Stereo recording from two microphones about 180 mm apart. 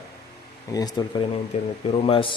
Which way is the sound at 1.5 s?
35° left (ahead or behind).